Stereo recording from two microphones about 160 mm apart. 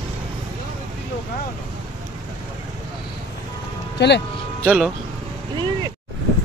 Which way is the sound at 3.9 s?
90° left.